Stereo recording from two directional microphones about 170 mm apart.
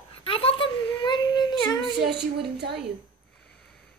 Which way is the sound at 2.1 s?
80° right.